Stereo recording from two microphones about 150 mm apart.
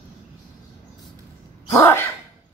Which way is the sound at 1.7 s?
15° left (ahead or behind).